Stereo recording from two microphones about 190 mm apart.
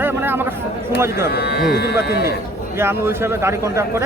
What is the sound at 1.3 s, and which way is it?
Speech, 60° left (ahead or behind).